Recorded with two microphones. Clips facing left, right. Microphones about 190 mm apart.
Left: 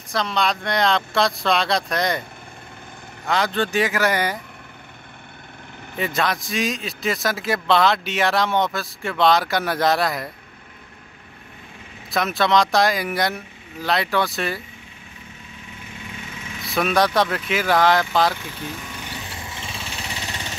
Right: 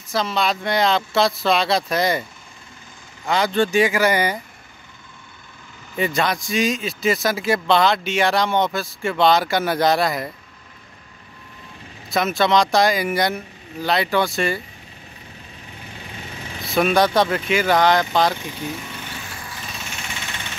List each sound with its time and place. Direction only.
0.1 s a man's voice: 5° right (ahead or behind)
3.3 s a man's voice: centre (ahead or behind)
5.9 s a man's voice: centre (ahead or behind)
12.1 s a man's voice: centre (ahead or behind)
16.7 s a man's voice: centre (ahead or behind)
19.2 s a sound: 25° left (ahead or behind)